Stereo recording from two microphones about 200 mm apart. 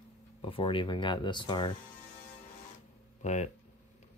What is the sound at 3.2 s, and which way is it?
Speech, 35° left (ahead or behind).